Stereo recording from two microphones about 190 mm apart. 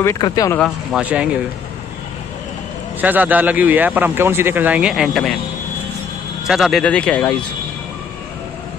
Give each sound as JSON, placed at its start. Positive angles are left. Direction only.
{"t": 0.0, "sound": "speech", "side_deg": 15}
{"t": 0.6, "sound": "speech", "side_deg": -5}
{"t": 3.0, "sound": "a man's voice", "side_deg": -10}
{"t": 6.4, "sound": "speech", "side_deg": 0}